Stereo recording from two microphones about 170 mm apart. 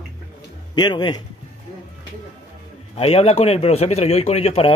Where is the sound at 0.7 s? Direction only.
25° left (ahead or behind).